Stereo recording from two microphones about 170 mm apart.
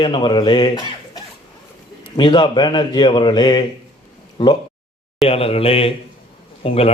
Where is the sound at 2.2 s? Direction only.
30° left (ahead or behind).